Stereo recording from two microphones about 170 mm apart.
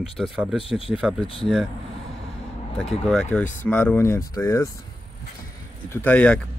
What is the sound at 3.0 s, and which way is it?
Speech, 5° left (ahead or behind).